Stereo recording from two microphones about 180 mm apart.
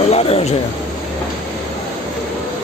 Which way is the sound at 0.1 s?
35° left (ahead or behind).